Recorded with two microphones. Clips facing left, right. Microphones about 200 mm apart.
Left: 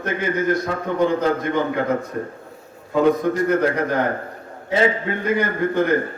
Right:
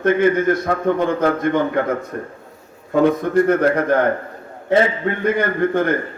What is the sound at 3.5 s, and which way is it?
Speech, 50° right (ahead or behind).